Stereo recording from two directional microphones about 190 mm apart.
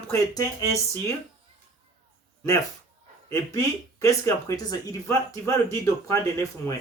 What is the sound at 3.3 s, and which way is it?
Speech, 15° left (ahead or behind).